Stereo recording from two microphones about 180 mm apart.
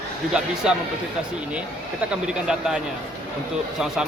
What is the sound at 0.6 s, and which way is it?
Speech, 5° right (ahead or behind).